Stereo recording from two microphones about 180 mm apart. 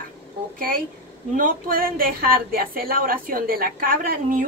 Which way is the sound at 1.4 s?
50° right (ahead or behind).